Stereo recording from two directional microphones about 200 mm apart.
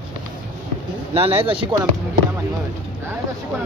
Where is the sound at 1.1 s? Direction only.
30° right (ahead or behind).